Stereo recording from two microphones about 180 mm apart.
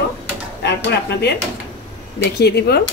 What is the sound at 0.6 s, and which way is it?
Speech, 70° left (ahead or behind).